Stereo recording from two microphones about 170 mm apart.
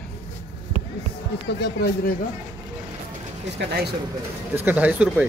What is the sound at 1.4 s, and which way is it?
Speech, 80° left.